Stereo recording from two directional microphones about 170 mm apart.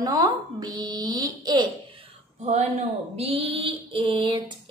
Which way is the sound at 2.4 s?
40° right (ahead or behind).